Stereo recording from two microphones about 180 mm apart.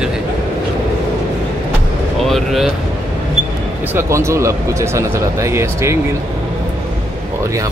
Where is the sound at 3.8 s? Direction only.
15° right (ahead or behind).